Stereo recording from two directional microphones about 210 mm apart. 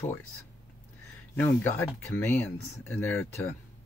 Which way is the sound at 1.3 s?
10° left (ahead or behind).